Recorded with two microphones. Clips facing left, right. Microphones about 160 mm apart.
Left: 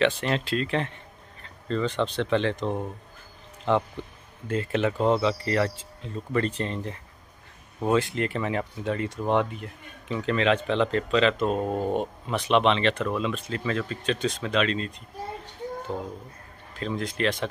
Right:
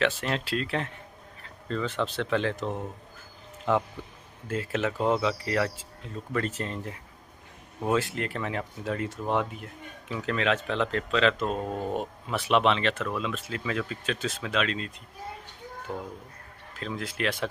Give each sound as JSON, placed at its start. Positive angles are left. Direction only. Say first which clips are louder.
{"t": 0.0, "sound": "a man's voice", "louder": "left 4 dB", "side_deg": 0}
{"t": 15.9, "sound": "speech", "louder": "left 1 dB", "side_deg": 25}
{"t": 16.7, "sound": "a man's voice", "louder": "left 4 dB", "side_deg": -5}